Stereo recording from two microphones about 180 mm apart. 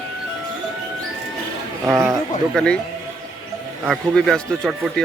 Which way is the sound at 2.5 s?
5° left (ahead or behind).